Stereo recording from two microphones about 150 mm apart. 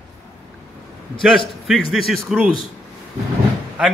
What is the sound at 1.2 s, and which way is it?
A man's voice, centre (ahead or behind).